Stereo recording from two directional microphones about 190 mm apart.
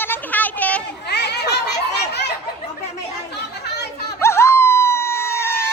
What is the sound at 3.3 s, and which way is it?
Chatter, 60° left (ahead or behind).